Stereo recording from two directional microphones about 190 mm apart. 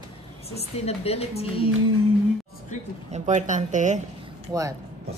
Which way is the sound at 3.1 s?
40° right (ahead or behind).